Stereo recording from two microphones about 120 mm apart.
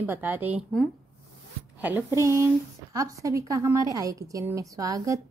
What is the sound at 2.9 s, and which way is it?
A woman's voice, 30° right (ahead or behind).